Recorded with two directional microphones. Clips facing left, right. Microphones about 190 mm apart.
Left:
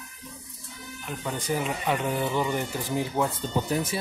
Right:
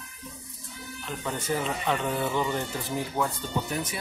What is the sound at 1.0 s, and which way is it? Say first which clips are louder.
Speech: left 1 dB; 10° left (ahead or behind).